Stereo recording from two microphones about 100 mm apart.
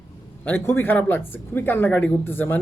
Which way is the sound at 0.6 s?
20° left (ahead or behind).